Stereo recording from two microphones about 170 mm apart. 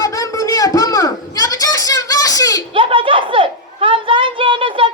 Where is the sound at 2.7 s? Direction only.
30° right (ahead or behind).